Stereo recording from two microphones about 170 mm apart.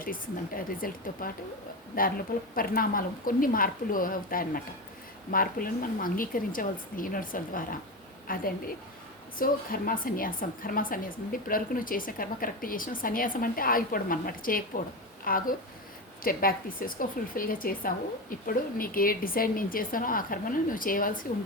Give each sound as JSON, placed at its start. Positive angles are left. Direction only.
{"t": 0.0, "sound": "a woman's voice", "side_deg": 55}